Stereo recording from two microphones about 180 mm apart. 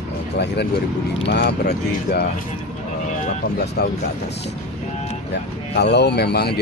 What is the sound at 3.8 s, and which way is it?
Speech, 55° left (ahead or behind).